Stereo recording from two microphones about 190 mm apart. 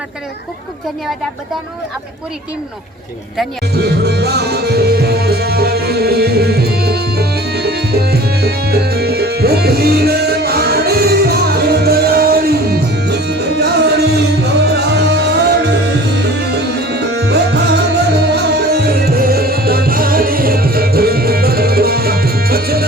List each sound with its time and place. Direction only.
3.8 s music: 60° right (ahead or behind)